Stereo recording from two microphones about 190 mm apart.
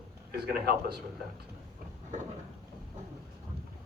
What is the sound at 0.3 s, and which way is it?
Speech, 55° right (ahead or behind).